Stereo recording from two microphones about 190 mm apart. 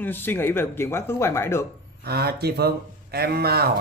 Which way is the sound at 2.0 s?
55° right (ahead or behind).